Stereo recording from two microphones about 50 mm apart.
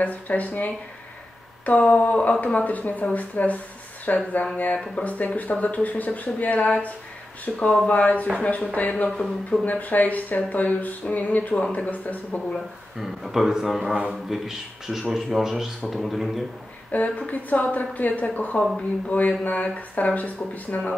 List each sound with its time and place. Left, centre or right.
0.0 s speech: left
9.1 s a man's voice: centre
9.7 s speech: left
13.0 s speech: centre
16.9 s speech: left